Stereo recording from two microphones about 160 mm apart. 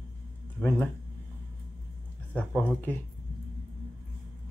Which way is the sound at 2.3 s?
10° left (ahead or behind).